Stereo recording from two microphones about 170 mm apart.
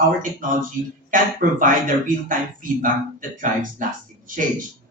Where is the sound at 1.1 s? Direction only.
50° right (ahead or behind).